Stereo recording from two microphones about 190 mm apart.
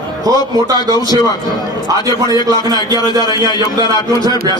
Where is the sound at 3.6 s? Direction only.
20° right (ahead or behind).